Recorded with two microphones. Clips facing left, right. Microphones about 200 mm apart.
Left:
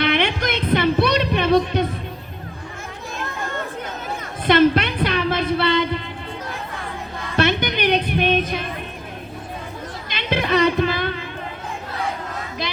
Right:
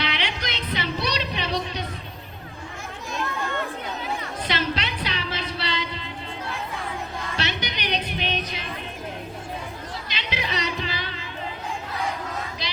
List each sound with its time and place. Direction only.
0.0 s music: 55° left (ahead or behind)
3.2 s chatter: 45° left (ahead or behind)
4.4 s music: 55° left (ahead or behind)
7.3 s music: 55° left (ahead or behind)
10.1 s a sound: 55° left (ahead or behind)
12.6 s a sound: 55° left (ahead or behind)